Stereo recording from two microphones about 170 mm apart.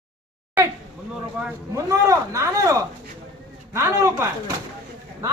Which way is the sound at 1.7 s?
20° right (ahead or behind).